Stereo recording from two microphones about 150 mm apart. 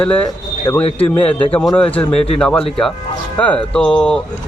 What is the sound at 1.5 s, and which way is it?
A man's voice, 5° left (ahead or behind).